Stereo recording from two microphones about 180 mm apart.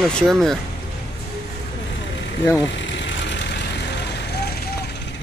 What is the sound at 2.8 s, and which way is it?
Vehicle, 85° left.